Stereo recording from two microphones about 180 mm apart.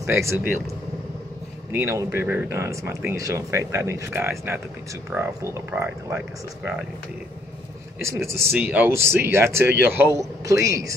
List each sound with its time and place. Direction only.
0.0 s speech: 15° right (ahead or behind)
1.7 s speech: 15° right (ahead or behind)
8.0 s speech: 15° right (ahead or behind)